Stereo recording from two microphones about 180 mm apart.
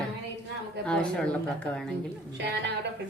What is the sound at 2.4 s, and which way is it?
Speech, 65° right (ahead or behind).